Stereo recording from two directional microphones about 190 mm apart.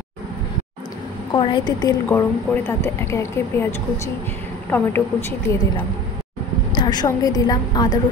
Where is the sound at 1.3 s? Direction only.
25° left (ahead or behind).